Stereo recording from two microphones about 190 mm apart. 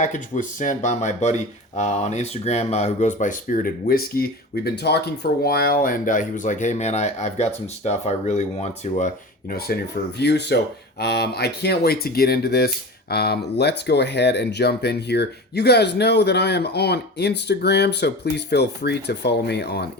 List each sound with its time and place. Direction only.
0.0 s speech: 40° left (ahead or behind)
10.2 s speech: 60° left (ahead or behind)